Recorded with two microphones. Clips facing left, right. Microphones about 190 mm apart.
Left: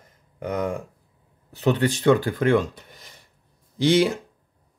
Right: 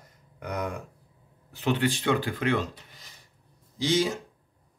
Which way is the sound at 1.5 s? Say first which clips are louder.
Left 5 dB; 40° left (ahead or behind).